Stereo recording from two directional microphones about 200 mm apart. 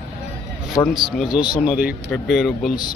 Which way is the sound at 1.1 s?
Centre (ahead or behind).